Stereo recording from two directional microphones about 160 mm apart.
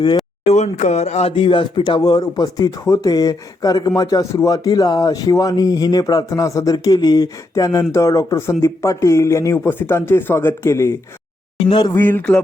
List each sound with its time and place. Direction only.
0.4 s speech: 45° left (ahead or behind); by 10.9 s 15° left (ahead or behind)
11.6 s speech: 30° left (ahead or behind)
11.9 s a sound: 15° left (ahead or behind)